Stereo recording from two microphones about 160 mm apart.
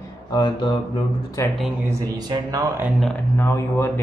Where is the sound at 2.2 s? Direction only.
25° right (ahead or behind).